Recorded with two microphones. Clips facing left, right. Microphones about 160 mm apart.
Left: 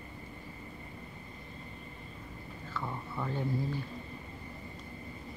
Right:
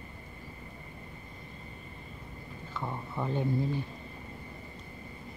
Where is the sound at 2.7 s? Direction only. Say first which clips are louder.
Right 2 dB; 20° right (ahead or behind).